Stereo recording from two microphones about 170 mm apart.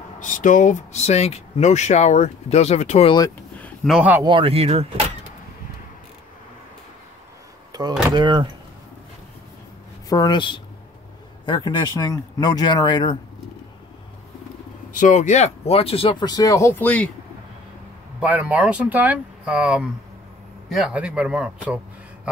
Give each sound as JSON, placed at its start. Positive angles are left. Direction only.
{"t": 0.2, "sound": "speech", "side_deg": 50}
{"t": 3.5, "sound": "a sound", "side_deg": 10}
{"t": 3.9, "sound": "speech", "side_deg": -10}
{"t": 4.2, "sound": "speech", "side_deg": -30}
{"t": 7.7, "sound": "speech", "side_deg": -20}
{"t": 10.0, "sound": "speech", "side_deg": 25}
{"t": 14.9, "sound": "speech", "side_deg": 50}
{"t": 18.2, "sound": "speech", "side_deg": -10}